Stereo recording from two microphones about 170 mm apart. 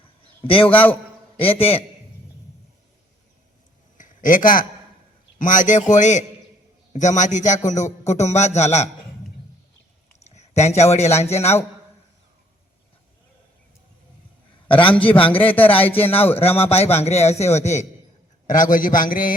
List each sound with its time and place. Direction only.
0.4 s a man's voice: 30° left (ahead or behind)
0.7 s speech: 10° left (ahead or behind)
1.4 s a man's voice: 35° left (ahead or behind)
3.9 s a sound: 50° left (ahead or behind)
5.4 s a man's voice: 50° left (ahead or behind)
10.2 s a man's voice: 40° left (ahead or behind)
14.7 s a man's voice: 30° left (ahead or behind)
15.4 s speech: 10° left (ahead or behind)
16.6 s a man's voice: 35° left (ahead or behind); by 19.3 s 55° left (ahead or behind)